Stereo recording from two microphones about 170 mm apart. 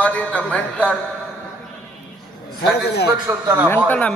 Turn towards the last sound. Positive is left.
turn(degrees=10)  # may be behind; listen again after turning